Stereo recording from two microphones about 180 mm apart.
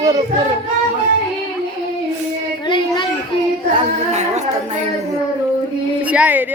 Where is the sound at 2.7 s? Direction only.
25° left (ahead or behind).